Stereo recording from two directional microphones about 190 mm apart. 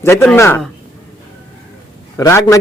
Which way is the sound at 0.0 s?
10° left (ahead or behind).